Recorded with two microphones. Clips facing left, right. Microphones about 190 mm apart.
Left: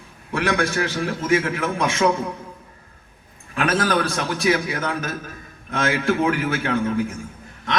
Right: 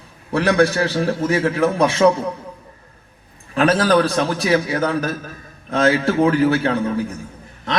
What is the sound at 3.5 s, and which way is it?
A man's voice, 35° right (ahead or behind).